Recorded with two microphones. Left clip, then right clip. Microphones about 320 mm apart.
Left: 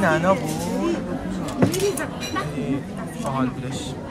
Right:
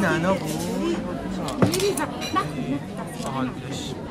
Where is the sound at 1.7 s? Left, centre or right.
Centre.